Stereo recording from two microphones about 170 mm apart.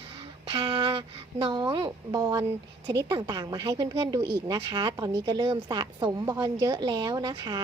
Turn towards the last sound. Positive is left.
turn(degrees=-25)  # may be behind; listen again after turning